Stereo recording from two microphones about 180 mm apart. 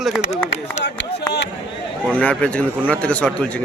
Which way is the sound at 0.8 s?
70° left (ahead or behind).